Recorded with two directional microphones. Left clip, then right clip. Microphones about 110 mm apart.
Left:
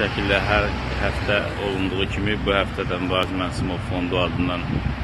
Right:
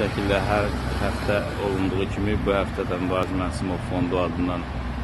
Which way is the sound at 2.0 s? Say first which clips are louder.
Left 2 dB; 10° right (ahead or behind).